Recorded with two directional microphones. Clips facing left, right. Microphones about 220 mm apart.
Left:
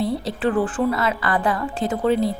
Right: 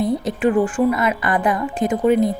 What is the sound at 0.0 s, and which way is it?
A woman's voice, 20° right (ahead or behind).